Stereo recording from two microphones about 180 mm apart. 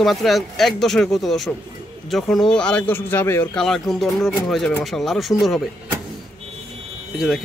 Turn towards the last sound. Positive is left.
turn(degrees=0)  # may be behind; listen again after turning